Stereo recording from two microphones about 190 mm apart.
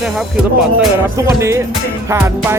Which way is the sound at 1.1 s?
15° right (ahead or behind).